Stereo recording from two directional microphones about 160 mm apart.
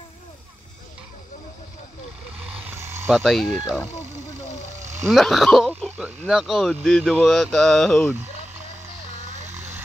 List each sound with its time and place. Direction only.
2.4 s vehicle: 10° right (ahead or behind)
3.1 s speech: centre (ahead or behind)
5.0 s speech: centre (ahead or behind)
9.5 s vehicle: 15° right (ahead or behind)